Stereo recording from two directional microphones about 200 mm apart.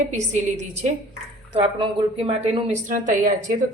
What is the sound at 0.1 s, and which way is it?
A woman's voice, 35° right (ahead or behind).